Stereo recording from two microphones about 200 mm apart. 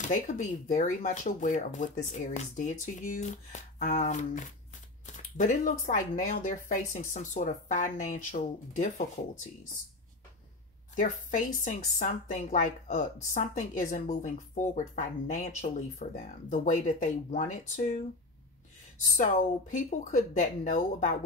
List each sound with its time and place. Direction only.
0.1 s speech: 40° left (ahead or behind)
11.0 s speech: 40° left (ahead or behind)
19.1 s speech: 40° left (ahead or behind)